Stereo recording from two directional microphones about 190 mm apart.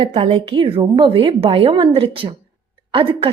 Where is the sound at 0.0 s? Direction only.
30° right (ahead or behind).